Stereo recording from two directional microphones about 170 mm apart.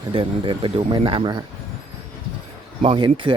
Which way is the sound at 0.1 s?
30° right (ahead or behind).